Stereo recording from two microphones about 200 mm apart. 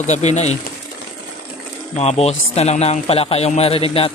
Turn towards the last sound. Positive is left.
turn(degrees=30)  # may be behind; listen again after turning